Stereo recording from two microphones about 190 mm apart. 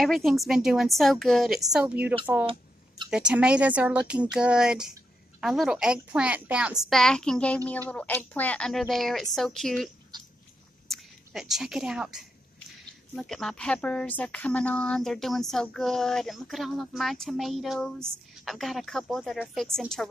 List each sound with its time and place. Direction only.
0.0 s speech: centre (ahead or behind)
10.1 s dog: 20° right (ahead or behind)
10.9 s speech: centre (ahead or behind)